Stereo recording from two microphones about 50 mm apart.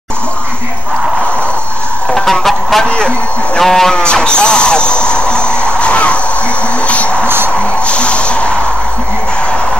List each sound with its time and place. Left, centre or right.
2.0 s music: centre
3.5 s sheep: centre
3.9 s music: centre
6.9 s a sound: left
7.2 s music: right
7.8 s music: left